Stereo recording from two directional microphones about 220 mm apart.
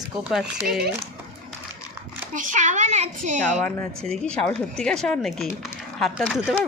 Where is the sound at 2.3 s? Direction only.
35° right (ahead or behind).